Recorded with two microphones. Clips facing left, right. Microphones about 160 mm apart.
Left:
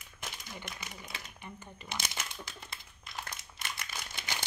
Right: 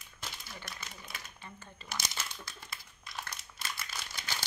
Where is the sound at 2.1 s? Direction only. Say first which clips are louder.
Left 1 dB; 20° left (ahead or behind).